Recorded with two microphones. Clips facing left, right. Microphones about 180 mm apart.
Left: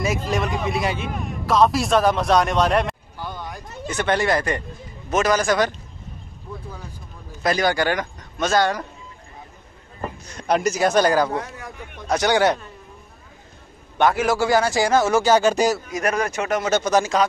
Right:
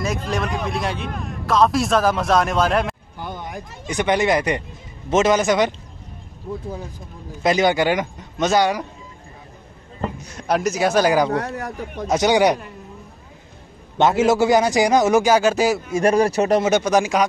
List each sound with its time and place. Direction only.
0.0 s a man's voice: centre (ahead or behind)
3.2 s a man's voice: 20° right (ahead or behind)
7.4 s a man's voice: 20° right (ahead or behind)
10.3 s a man's voice: 5° right (ahead or behind)
11.3 s speech: 70° right (ahead or behind)
12.1 s speech: 20° right (ahead or behind)
13.9 s a man's voice: 20° right (ahead or behind); by 15.8 s 5° right (ahead or behind)
15.9 s speech: 30° right (ahead or behind)
16.6 s speech: 15° right (ahead or behind)